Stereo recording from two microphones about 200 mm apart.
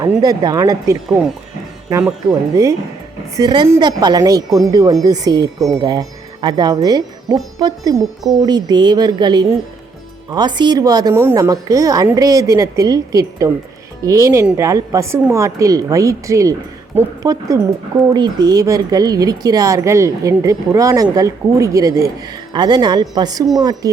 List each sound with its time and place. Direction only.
0.0 s speech: 20° right (ahead or behind)
2.2 s a woman's voice: 15° right (ahead or behind)